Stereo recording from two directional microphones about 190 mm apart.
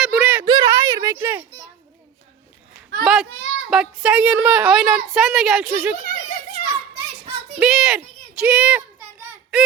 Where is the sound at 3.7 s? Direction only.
5° right (ahead or behind).